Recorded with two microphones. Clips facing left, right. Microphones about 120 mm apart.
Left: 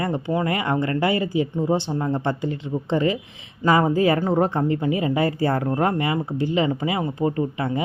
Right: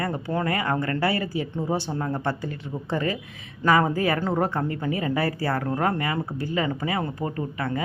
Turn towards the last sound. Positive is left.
turn(degrees=20)  # may be behind; listen again after turning